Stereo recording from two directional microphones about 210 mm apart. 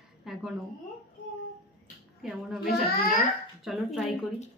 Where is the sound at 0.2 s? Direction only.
Centre (ahead or behind).